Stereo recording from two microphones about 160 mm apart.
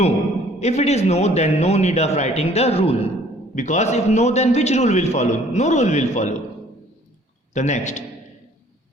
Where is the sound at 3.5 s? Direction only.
50° left (ahead or behind).